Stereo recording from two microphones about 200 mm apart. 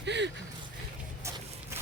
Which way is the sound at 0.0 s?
60° right (ahead or behind).